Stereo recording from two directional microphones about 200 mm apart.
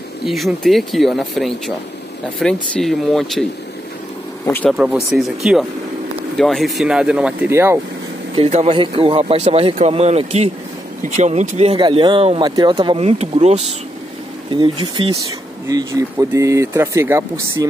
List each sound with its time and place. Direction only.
0.2 s speech: centre (ahead or behind)
4.5 s speech: 10° left (ahead or behind)
5.1 s speech: centre (ahead or behind)
8.4 s speech: 30° right (ahead or behind); by 17.6 s 15° right (ahead or behind)